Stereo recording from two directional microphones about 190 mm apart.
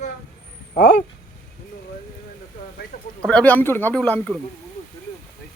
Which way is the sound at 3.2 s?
5° left (ahead or behind).